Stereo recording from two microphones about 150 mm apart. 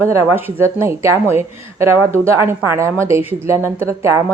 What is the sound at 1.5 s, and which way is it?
Speech, 45° left (ahead or behind).